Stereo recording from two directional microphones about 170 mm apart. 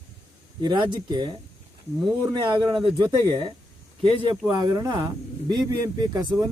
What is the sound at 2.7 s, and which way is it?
Speech, 30° right (ahead or behind).